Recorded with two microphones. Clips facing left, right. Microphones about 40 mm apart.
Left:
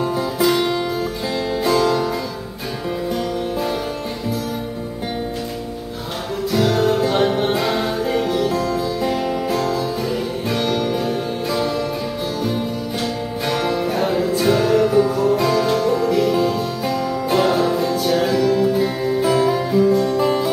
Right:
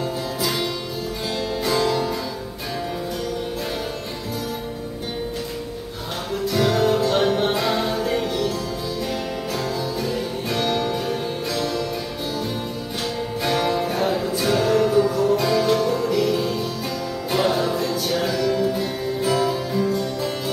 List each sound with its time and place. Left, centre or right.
0.0 s music: centre
1.7 s harpsichord: centre
6.5 s music: centre
8.5 s music: centre
10.0 s music: centre
13.5 s music: centre